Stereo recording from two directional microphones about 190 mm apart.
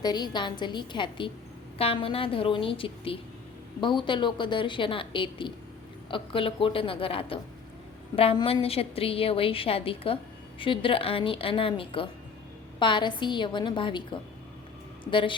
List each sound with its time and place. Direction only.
0.0 s a woman's voice: 20° left (ahead or behind)